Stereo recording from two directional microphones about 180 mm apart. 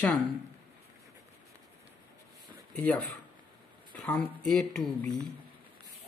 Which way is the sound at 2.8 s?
5° left (ahead or behind).